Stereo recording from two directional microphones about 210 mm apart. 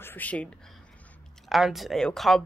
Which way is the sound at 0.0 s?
10° left (ahead or behind).